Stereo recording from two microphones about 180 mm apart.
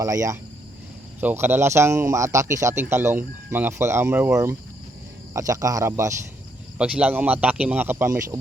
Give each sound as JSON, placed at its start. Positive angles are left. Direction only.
{"t": 0.0, "sound": "speech", "side_deg": -15}